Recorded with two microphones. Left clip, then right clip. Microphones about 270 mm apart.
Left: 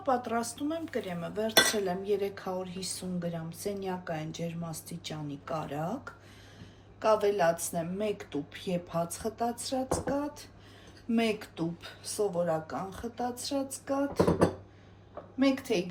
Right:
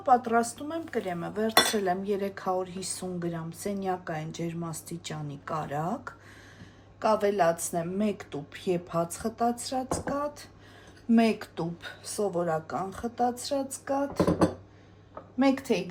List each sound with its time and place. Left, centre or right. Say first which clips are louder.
0.0 s speech: right 7 dB; right
1.0 s cutlery: right 3 dB; right
15.4 s cutlery: right 3 dB; right